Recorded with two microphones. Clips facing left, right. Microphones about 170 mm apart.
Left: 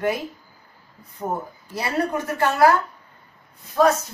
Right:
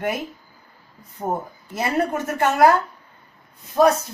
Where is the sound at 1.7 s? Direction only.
20° right (ahead or behind).